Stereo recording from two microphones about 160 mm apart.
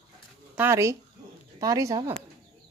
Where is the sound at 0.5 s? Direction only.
15° right (ahead or behind).